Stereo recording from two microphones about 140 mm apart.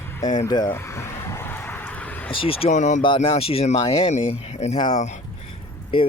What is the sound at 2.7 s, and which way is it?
Speech, 60° left (ahead or behind).